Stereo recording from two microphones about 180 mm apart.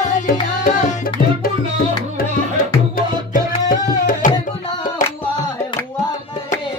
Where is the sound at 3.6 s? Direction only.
45° left (ahead or behind).